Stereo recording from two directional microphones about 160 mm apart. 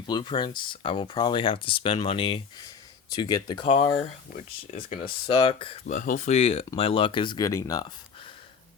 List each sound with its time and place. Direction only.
0.1 s speech: 30° left (ahead or behind)
4.4 s speech: 50° left (ahead or behind)
5.0 s speech: 30° left (ahead or behind)
5.9 s speech: 60° left (ahead or behind)
6.3 s speech: 40° left (ahead or behind); by 7.9 s 20° left (ahead or behind)